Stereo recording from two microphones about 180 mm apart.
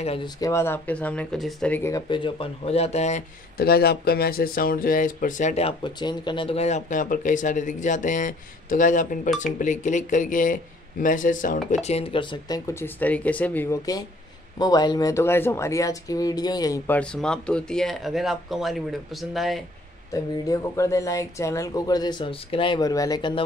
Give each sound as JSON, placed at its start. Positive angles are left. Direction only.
{"t": 0.0, "sound": "speech", "side_deg": 30}
{"t": 0.4, "sound": "speech", "side_deg": 15}
{"t": 3.5, "sound": "speech", "side_deg": 60}
{"t": 11.7, "sound": "speech", "side_deg": 35}
{"t": 20.1, "sound": "speech", "side_deg": 15}